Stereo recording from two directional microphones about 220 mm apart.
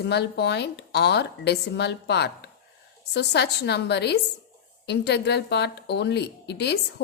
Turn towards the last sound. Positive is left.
turn(degrees=50)  # may be behind; listen again after turning